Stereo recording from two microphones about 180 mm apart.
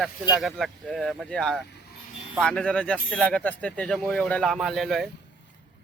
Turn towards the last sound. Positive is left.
turn(degrees=0)  # may be behind; listen again after turning